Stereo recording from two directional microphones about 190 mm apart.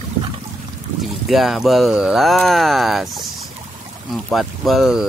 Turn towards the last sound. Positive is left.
turn(degrees=0)  # may be behind; listen again after turning